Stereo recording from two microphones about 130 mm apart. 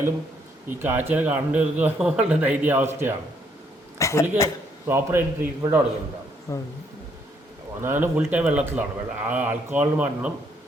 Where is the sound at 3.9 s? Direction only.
25° left (ahead or behind).